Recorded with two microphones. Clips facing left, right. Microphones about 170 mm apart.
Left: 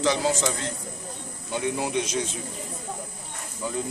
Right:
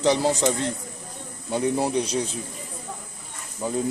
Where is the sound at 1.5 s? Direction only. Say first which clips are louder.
Right 4 dB; 35° right (ahead or behind).